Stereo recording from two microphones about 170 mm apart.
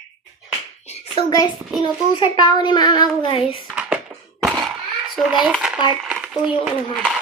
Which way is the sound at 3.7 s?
5° right (ahead or behind).